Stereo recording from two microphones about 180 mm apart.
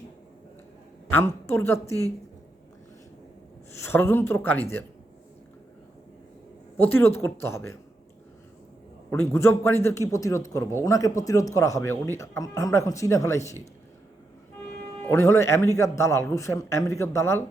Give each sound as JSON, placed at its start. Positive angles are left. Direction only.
{"t": 1.1, "sound": "a man's voice", "side_deg": 15}
{"t": 3.8, "sound": "a man's voice", "side_deg": 10}
{"t": 6.7, "sound": "a man's voice", "side_deg": 10}
{"t": 9.0, "sound": "a man's voice", "side_deg": 15}
{"t": 15.0, "sound": "a man's voice", "side_deg": 15}